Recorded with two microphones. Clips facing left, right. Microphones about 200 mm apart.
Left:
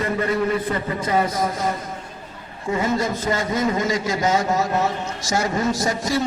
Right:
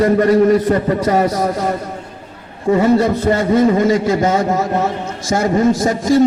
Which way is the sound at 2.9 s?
60° right (ahead or behind).